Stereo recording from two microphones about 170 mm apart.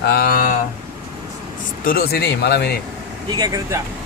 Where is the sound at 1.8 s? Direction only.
60° left (ahead or behind).